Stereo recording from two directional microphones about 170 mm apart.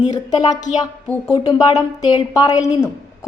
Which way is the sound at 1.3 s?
20° left (ahead or behind).